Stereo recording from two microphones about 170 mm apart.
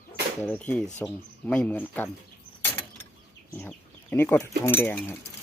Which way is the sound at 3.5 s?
10° left (ahead or behind).